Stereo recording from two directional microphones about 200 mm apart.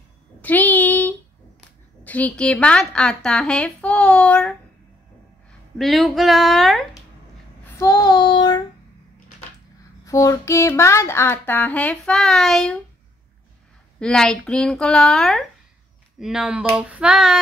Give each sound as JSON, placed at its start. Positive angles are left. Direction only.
{"t": 0.4, "sound": "a sound", "side_deg": 10}
{"t": 2.0, "sound": "a woman's voice", "side_deg": 5}
{"t": 5.8, "sound": "a woman's voice", "side_deg": 0}
{"t": 7.6, "sound": "child singing", "side_deg": 15}
{"t": 10.0, "sound": "a sound", "side_deg": 15}
{"t": 13.9, "sound": "a woman's voice", "side_deg": 5}